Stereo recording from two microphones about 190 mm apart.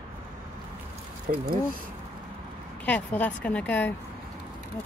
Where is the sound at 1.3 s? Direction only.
45° right (ahead or behind).